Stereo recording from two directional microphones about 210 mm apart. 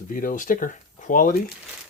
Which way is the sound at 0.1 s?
40° left (ahead or behind).